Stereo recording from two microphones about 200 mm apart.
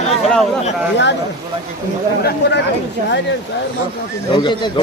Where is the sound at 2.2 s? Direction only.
55° left (ahead or behind).